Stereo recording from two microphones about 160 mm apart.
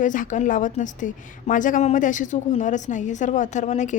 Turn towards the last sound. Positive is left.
turn(degrees=50)  # may be behind; listen again after turning